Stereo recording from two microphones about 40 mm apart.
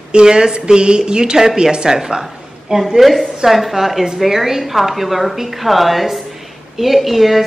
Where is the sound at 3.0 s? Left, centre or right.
Centre.